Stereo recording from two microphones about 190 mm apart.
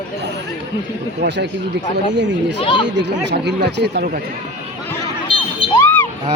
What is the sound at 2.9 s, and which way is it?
Speech, 65° right (ahead or behind).